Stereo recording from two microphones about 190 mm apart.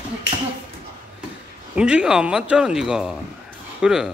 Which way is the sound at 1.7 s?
5° right (ahead or behind).